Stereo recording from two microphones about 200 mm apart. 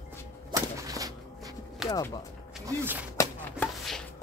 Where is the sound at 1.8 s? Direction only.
20° left (ahead or behind).